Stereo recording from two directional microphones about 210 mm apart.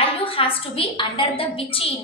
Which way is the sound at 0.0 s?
25° left (ahead or behind).